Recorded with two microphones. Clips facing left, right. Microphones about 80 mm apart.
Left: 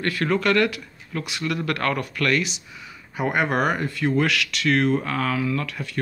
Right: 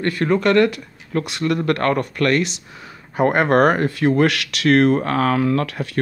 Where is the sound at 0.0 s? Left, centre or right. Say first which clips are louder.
Right 4 dB; right.